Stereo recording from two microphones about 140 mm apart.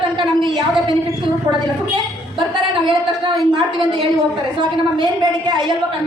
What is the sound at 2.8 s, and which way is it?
Speech, 35° right (ahead or behind).